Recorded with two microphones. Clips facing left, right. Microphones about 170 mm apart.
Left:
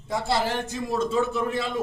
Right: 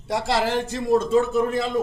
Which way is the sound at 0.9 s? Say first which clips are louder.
Right 6 dB; 45° right (ahead or behind).